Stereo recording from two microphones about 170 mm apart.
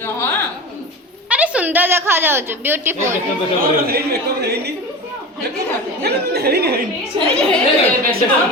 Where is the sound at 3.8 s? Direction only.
65° right (ahead or behind).